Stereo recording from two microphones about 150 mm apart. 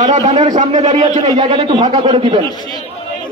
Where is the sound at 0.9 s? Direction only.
40° right (ahead or behind).